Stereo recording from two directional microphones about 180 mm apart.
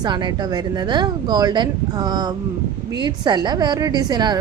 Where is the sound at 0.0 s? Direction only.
25° right (ahead or behind).